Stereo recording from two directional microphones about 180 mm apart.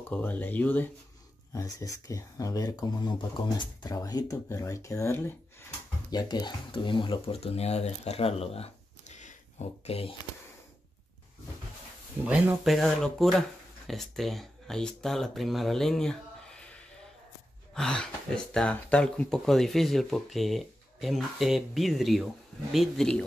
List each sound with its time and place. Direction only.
0.1 s speech: 10° left (ahead or behind); by 10.1 s 35° left (ahead or behind)
12.3 s speech: 5° right (ahead or behind)
17.7 s speech: 5° left (ahead or behind)